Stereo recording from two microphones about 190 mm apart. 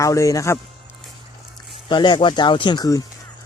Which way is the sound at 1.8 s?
25° left (ahead or behind).